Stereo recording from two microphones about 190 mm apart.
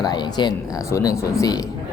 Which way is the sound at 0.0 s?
20° left (ahead or behind).